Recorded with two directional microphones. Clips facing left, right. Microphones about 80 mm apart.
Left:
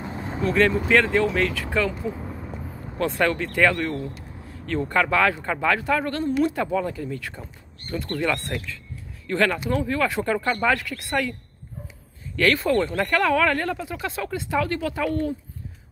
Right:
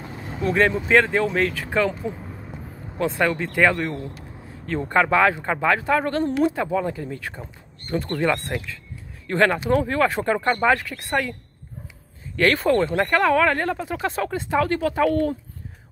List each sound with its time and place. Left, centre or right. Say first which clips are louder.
0.5 s speech: right 1 dB; right
3.0 s speech: right 1 dB; centre
12.4 s speech: right 2 dB; right